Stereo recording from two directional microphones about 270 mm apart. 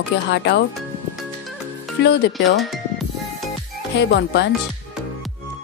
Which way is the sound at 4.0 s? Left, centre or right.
Left.